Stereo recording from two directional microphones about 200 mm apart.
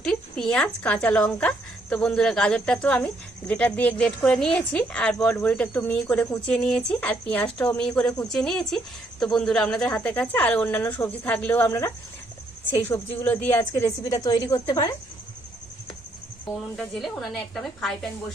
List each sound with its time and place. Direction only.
0.0 s speech: 5° left (ahead or behind); by 14.9 s 20° left (ahead or behind)
16.7 s speech: centre (ahead or behind)